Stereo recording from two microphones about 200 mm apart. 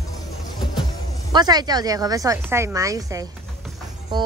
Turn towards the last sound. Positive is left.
turn(degrees=-20)  # may be behind; listen again after turning